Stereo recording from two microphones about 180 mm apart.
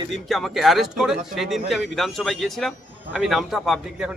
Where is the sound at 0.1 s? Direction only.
Centre (ahead or behind).